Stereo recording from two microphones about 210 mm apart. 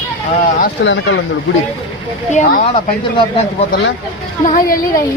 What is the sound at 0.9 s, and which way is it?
Speech, 60° left (ahead or behind).